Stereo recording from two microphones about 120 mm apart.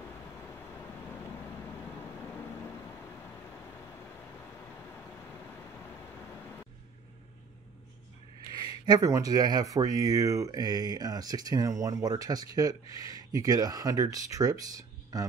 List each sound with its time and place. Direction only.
8.8 s speech: 30° right (ahead or behind)